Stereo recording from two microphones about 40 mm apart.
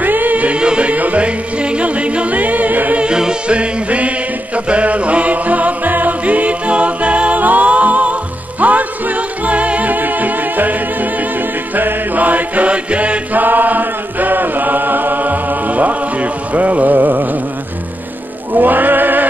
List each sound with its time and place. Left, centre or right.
0.0 s music: right
0.6 s music: right
0.9 s music: right
3.0 s music: right
13.4 s chant: right
18.5 s music: right